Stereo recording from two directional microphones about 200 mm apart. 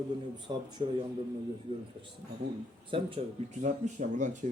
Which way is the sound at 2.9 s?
25° right (ahead or behind).